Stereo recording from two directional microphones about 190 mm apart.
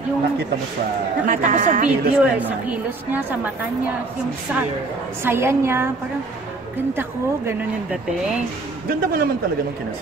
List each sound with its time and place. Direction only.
1.2 s a woman's voice: 45° right (ahead or behind)
1.9 s speech: 5° right (ahead or behind)
5.2 s speech: 10° right (ahead or behind)
6.9 s speech: 10° right (ahead or behind)
8.8 s a woman's voice: 50° right (ahead or behind)